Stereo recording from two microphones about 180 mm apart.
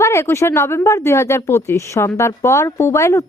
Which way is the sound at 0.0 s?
15° left (ahead or behind).